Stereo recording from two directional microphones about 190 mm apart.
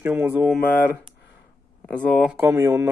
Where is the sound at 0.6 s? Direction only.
50° left (ahead or behind).